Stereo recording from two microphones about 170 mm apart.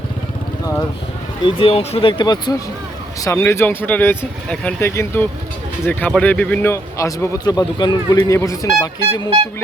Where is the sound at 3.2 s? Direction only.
15° left (ahead or behind).